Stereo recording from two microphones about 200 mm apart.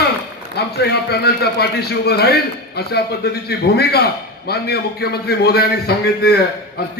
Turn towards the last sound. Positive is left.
turn(degrees=50)  # may be behind; listen again after turning